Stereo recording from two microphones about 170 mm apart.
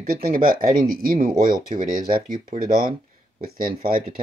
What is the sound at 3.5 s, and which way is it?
Speech, 55° right (ahead or behind).